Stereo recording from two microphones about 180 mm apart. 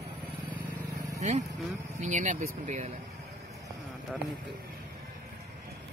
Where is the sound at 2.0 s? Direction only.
40° right (ahead or behind).